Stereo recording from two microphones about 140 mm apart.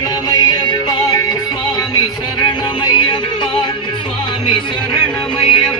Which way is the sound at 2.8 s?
35° left (ahead or behind).